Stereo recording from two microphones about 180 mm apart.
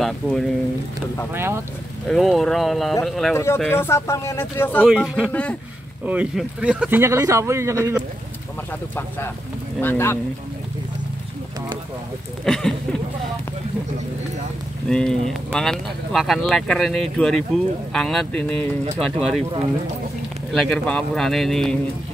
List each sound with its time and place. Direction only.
0.0 s speech: 5° left (ahead or behind)
1.3 s speech: 15° right (ahead or behind)
2.0 s speech: centre (ahead or behind)
3.3 s speech: 10° left (ahead or behind)
4.8 s speech: centre (ahead or behind)
5.3 s speech: 5° left (ahead or behind)
6.0 s speech: 5° right (ahead or behind)
9.8 s speech: 10° left (ahead or behind)
12.4 s speech: 5° left (ahead or behind)
14.9 s speech: 5° left (ahead or behind)
18.9 s speech: 35° right (ahead or behind)
20.5 s speech: 5° left (ahead or behind)